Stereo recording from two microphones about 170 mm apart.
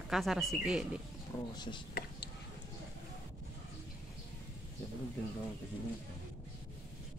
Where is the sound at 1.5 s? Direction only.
25° left (ahead or behind).